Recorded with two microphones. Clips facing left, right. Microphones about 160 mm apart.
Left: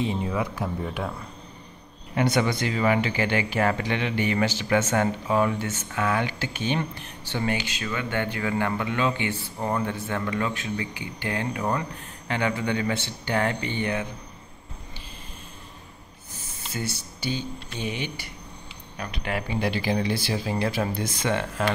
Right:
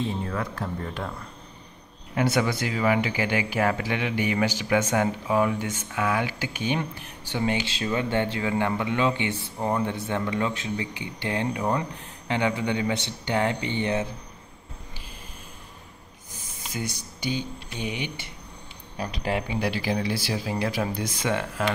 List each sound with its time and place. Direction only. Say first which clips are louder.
0.0 s speech: left 2 dB; 15° left (ahead or behind)
2.1 s speech: left 1 dB; 5° right (ahead or behind); by 14.0 s 20° right (ahead or behind)
16.7 s speech: left 1 dB; 15° right (ahead or behind)
18.9 s speech: right 3 dB; 30° right (ahead or behind)
19.4 s speech: left 1 dB; 5° right (ahead or behind)